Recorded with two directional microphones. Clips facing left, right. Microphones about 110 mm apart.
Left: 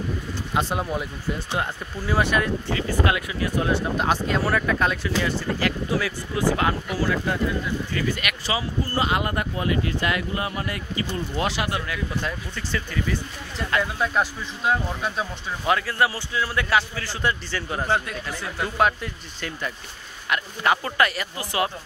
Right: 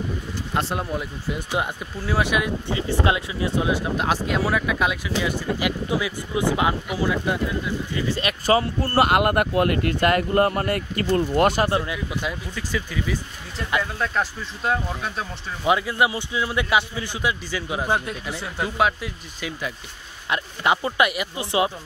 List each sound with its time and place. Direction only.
0.6 s speech: centre (ahead or behind)
2.7 s speech: 25° right (ahead or behind)
3.6 s speech: 5° right (ahead or behind)
7.9 s speech: 30° right (ahead or behind)
8.5 s speech: 60° right (ahead or behind)
11.6 s speech: 25° right (ahead or behind)
12.1 s speech: 10° right (ahead or behind)
13.9 s speech: 5° left (ahead or behind)
15.6 s speech: 15° right (ahead or behind)
20.2 s speech: 20° right (ahead or behind)